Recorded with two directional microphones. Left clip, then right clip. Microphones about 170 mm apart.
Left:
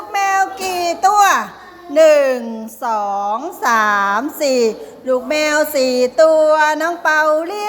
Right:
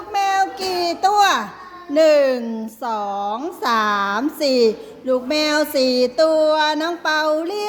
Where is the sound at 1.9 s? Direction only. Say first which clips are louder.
Left 4 dB; 25° right (ahead or behind).